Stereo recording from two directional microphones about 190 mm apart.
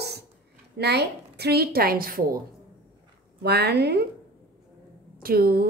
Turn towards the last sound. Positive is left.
turn(degrees=-55)  # may be behind; listen again after turning